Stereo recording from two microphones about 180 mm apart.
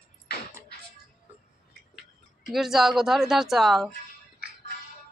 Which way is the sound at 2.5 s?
Centre (ahead or behind).